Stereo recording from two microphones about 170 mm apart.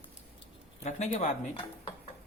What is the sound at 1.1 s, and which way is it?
Speech, 35° left (ahead or behind).